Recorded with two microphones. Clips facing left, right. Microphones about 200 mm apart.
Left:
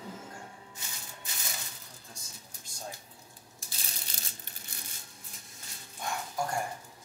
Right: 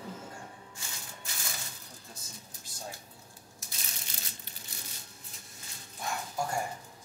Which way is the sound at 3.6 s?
30° left (ahead or behind).